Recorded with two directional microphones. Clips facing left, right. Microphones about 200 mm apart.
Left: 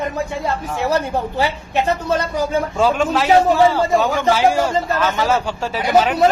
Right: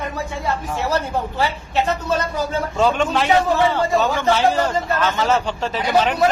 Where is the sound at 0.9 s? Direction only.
15° left (ahead or behind).